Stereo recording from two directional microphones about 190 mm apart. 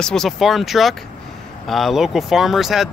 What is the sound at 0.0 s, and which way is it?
Speech, centre (ahead or behind).